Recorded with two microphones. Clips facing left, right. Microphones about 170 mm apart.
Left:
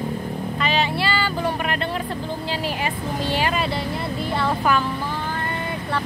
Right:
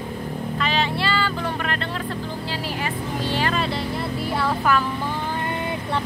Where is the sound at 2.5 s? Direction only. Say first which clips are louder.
Left 2 dB; 15° left (ahead or behind).